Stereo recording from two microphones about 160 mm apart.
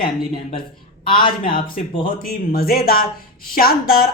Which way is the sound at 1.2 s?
60° left (ahead or behind).